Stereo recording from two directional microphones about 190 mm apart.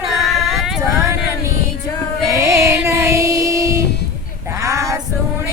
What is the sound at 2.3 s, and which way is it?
Music, 15° right (ahead or behind).